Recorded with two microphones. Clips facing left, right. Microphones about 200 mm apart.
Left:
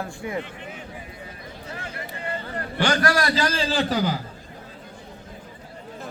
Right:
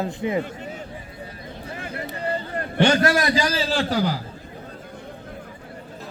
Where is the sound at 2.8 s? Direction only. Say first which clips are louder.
Right 4 dB; 25° right (ahead or behind).